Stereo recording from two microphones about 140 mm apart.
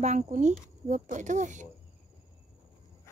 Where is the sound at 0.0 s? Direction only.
60° right (ahead or behind).